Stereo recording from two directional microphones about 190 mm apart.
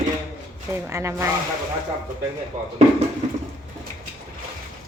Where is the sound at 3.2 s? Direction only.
35° right (ahead or behind).